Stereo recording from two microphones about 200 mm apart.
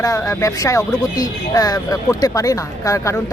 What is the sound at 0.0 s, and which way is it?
Speech, 15° left (ahead or behind).